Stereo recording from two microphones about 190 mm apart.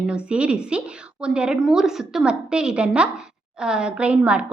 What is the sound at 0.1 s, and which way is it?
A woman's voice, 5° right (ahead or behind).